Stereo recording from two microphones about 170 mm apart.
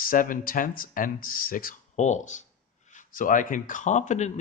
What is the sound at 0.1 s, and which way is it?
Speech, 55° left (ahead or behind).